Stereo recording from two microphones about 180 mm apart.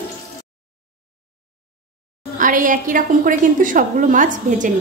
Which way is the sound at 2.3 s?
50° right (ahead or behind).